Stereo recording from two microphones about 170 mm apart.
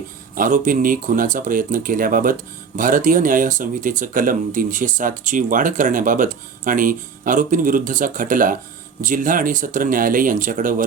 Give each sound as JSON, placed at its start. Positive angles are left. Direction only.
{"t": 0.3, "sound": "speech", "side_deg": -50}